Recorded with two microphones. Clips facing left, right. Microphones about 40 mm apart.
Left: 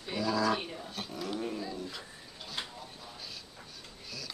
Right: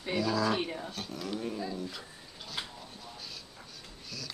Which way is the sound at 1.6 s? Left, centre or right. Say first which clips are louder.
Right 2 dB; centre.